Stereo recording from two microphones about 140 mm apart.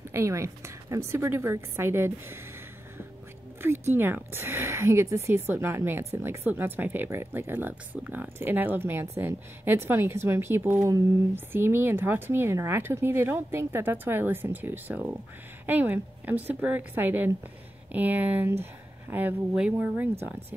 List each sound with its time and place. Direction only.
0.1 s speech: 20° right (ahead or behind)
3.6 s speech: 15° right (ahead or behind)